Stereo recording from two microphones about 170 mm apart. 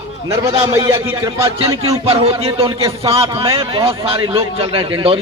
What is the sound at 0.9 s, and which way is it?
A man's voice, 15° right (ahead or behind).